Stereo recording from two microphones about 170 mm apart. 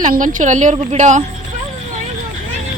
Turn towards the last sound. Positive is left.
turn(degrees=-45)  # may be behind; listen again after turning